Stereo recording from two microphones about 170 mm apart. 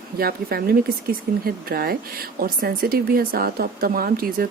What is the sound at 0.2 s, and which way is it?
A woman's voice, 60° right (ahead or behind).